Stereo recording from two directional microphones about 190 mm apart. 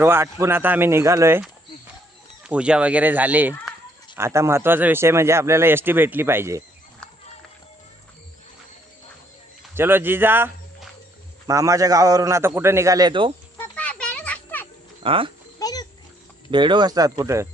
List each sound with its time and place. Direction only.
0.0 s a man's voice: 10° right (ahead or behind)
9.7 s a man's voice: 10° right (ahead or behind)
13.6 s children playing: 5° left (ahead or behind)
15.0 s speech: 30° right (ahead or behind)
15.5 s a sound: 20° left (ahead or behind)
16.5 s speech: 25° right (ahead or behind)